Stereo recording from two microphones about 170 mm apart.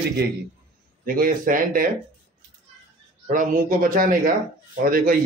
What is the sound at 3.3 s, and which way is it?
Speech, 50° right (ahead or behind).